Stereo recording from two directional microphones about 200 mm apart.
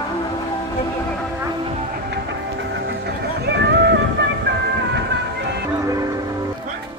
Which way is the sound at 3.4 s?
55° right (ahead or behind).